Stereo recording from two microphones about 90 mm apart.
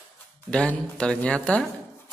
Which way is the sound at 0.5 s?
10° left (ahead or behind).